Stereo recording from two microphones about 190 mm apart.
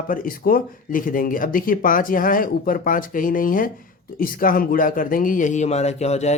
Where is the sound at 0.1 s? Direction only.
50° left (ahead or behind).